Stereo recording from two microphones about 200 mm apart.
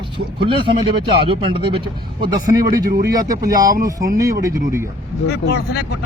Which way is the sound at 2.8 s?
50° right (ahead or behind).